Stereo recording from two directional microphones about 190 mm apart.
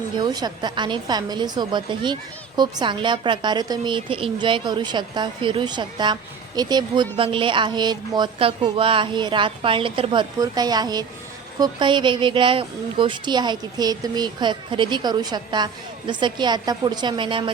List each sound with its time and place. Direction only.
0.2 s speech: 20° right (ahead or behind)